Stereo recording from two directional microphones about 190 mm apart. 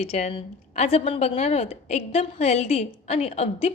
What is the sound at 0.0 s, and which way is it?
A woman's voice, 35° left (ahead or behind).